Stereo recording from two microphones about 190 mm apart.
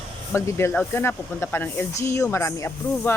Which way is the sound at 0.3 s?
15° left (ahead or behind).